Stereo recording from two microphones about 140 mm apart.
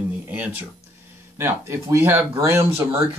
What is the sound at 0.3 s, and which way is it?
Speech, 10° right (ahead or behind).